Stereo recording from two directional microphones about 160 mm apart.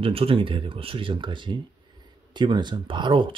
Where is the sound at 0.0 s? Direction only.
35° right (ahead or behind).